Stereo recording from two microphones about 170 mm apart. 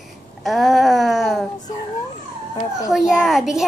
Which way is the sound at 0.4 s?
Centre (ahead or behind).